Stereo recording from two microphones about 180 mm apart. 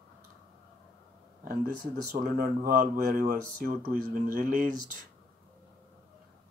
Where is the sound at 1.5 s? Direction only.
55° right (ahead or behind).